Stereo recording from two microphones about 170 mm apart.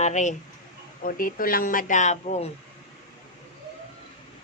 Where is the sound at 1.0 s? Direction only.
55° left (ahead or behind).